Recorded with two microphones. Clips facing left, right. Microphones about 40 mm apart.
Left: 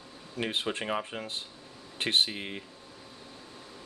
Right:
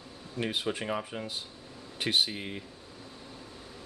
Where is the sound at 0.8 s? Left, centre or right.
Centre.